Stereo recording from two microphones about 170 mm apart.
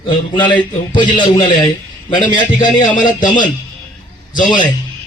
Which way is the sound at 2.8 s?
50° left (ahead or behind).